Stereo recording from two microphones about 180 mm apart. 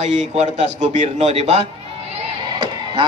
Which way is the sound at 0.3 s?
35° right (ahead or behind).